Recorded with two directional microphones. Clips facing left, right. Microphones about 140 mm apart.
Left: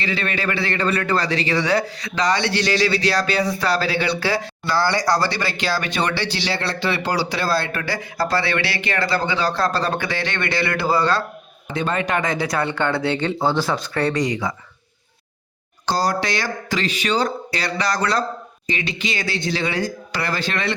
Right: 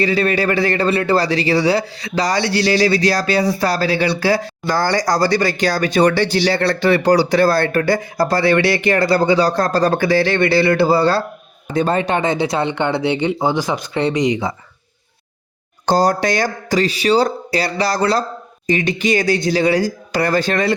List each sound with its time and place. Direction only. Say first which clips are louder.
0.0 s speech: right 8 dB; 40° right (ahead or behind); by 14.5 s 20° right (ahead or behind)
15.9 s speech: right 6 dB; 45° right (ahead or behind)
18.7 s speech: right 9 dB; 45° right (ahead or behind)